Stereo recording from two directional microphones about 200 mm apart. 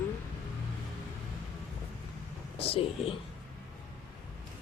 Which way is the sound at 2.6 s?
30° left (ahead or behind).